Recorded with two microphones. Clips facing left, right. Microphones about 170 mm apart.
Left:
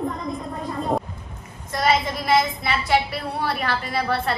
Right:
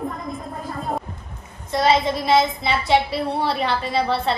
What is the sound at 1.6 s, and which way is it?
A woman's voice, 25° right (ahead or behind).